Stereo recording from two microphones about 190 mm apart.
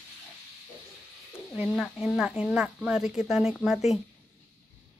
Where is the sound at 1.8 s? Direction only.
Centre (ahead or behind).